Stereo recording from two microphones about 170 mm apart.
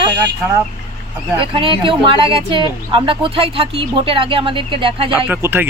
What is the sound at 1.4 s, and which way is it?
Speech, 30° right (ahead or behind).